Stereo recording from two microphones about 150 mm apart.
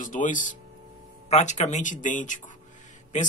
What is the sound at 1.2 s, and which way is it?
Speech, 50° left (ahead or behind).